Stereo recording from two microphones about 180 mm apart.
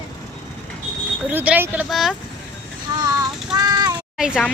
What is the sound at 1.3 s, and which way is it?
Speech, 10° right (ahead or behind).